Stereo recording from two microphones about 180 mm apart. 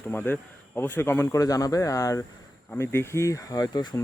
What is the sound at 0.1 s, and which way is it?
Speech, 10° left (ahead or behind).